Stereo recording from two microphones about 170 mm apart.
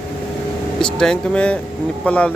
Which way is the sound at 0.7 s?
5° left (ahead or behind).